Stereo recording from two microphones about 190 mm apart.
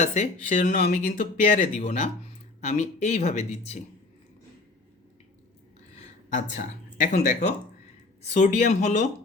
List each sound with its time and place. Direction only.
0.0 s speech: 35° left (ahead or behind)
6.3 s speech: 40° left (ahead or behind)